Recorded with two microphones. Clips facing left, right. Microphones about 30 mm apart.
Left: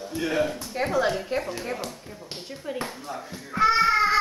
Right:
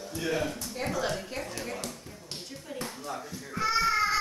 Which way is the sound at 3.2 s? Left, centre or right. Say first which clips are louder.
Left 10 dB; left.